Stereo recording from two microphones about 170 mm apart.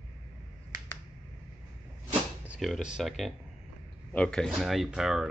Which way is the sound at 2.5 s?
Centre (ahead or behind).